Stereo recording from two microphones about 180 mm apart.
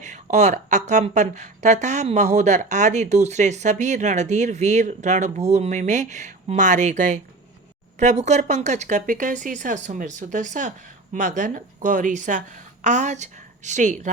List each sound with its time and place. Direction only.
0.0 s a woman's voice: 40° right (ahead or behind)